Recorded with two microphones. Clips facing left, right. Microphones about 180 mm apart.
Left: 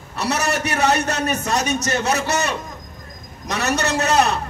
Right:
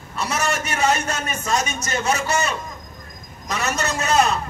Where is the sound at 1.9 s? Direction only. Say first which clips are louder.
Left 2 dB; 35° left (ahead or behind).